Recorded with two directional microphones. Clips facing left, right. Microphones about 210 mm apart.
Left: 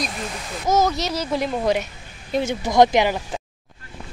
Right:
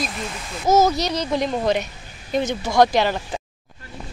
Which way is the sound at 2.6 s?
20° left (ahead or behind).